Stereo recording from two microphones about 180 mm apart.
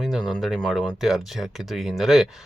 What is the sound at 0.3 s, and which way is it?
Speech, centre (ahead or behind).